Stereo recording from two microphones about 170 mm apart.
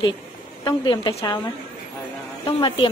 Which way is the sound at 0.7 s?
25° left (ahead or behind).